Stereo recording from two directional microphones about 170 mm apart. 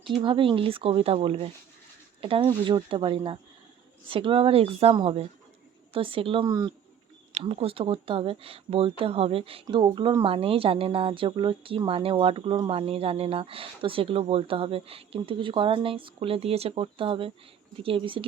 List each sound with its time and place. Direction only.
0.2 s speech: 30° right (ahead or behind)
6.5 s speech: 20° right (ahead or behind)
7.3 s speech: 35° right (ahead or behind)